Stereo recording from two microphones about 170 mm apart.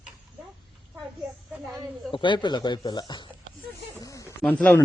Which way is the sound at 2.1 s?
30° left (ahead or behind).